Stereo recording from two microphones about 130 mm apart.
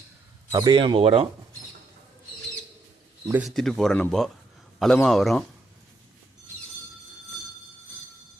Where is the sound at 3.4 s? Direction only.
Centre (ahead or behind).